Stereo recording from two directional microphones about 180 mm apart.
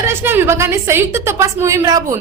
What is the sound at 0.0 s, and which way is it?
A woman's voice, 10° right (ahead or behind).